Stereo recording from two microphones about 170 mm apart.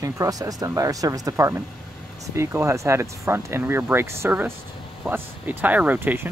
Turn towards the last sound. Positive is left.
turn(degrees=-10)  # may be behind; listen again after turning